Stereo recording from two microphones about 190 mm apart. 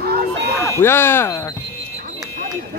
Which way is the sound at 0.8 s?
10° left (ahead or behind).